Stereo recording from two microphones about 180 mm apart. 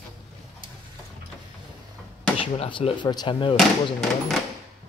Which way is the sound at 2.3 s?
30° left (ahead or behind).